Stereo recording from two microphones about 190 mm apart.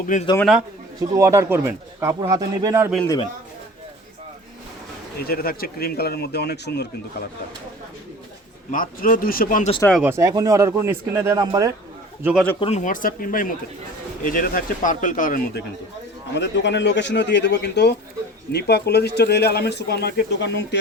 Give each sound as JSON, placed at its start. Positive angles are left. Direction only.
{"t": 0.0, "sound": "speech", "side_deg": 40}
{"t": 1.1, "sound": "a man's voice", "side_deg": -15}
{"t": 5.2, "sound": "speech", "side_deg": 55}
{"t": 8.7, "sound": "speech", "side_deg": 50}
{"t": 9.9, "sound": "a man's voice", "side_deg": -10}
{"t": 12.2, "sound": "speech", "side_deg": 0}
{"t": 12.5, "sound": "speech", "side_deg": 35}
{"t": 16.3, "sound": "speech", "side_deg": 65}